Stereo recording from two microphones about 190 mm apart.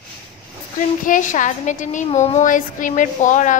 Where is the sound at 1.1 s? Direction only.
40° left (ahead or behind).